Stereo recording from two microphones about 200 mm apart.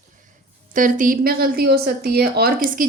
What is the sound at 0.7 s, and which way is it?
A woman's voice, 40° right (ahead or behind).